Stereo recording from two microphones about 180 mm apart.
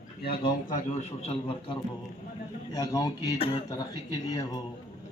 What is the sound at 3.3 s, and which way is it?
Speech, 30° left (ahead or behind).